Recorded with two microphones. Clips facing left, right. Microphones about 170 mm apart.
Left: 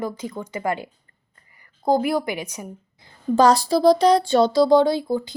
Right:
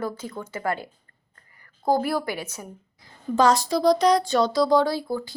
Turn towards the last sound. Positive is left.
turn(degrees=20)  # may be behind; listen again after turning